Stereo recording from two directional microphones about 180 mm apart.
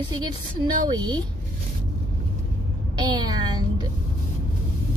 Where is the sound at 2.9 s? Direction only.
25° right (ahead or behind).